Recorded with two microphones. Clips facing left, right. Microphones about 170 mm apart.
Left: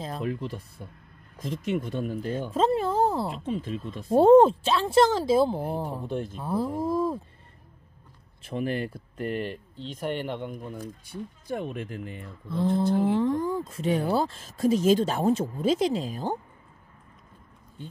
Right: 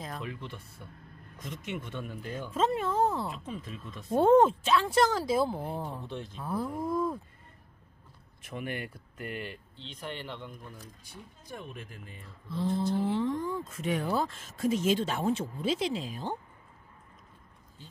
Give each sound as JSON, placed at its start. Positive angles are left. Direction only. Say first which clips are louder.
{"t": 0.2, "sound": "speech", "louder": "left 9 dB", "side_deg": 40}
{"t": 6.0, "sound": "speech", "louder": "left 8 dB", "side_deg": 50}
{"t": 6.4, "sound": "speech", "louder": "left 4 dB", "side_deg": 30}
{"t": 8.4, "sound": "speech", "louder": "left 8 dB", "side_deg": 30}
{"t": 11.5, "sound": "speech", "louder": "left 11 dB", "side_deg": 70}